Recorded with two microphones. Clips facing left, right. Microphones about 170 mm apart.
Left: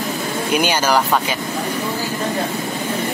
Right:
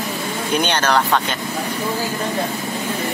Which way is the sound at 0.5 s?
5° left (ahead or behind).